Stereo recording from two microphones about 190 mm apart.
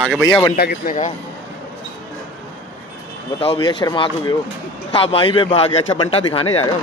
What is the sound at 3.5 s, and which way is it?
A man's voice, 20° left (ahead or behind).